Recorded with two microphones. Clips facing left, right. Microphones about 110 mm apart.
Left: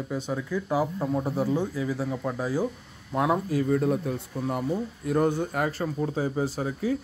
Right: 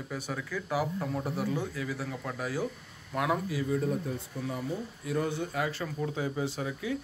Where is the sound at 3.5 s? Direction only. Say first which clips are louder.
Left 6 dB; 50° left (ahead or behind).